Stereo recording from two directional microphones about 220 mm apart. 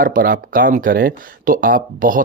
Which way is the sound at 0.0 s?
40° right (ahead or behind).